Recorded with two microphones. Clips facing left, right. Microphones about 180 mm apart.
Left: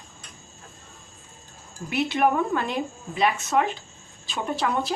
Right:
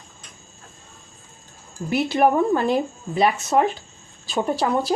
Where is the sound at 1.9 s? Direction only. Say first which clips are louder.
Right 4 dB; 35° right (ahead or behind).